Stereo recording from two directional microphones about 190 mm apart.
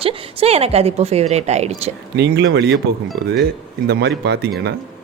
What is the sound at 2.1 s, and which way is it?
A woman's voice, 65° right (ahead or behind).